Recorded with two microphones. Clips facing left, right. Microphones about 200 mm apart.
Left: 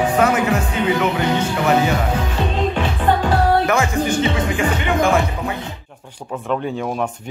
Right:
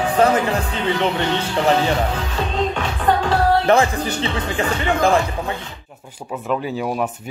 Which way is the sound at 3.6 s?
35° right (ahead or behind).